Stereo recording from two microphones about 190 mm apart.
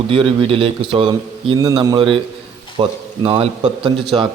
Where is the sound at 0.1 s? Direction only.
25° right (ahead or behind).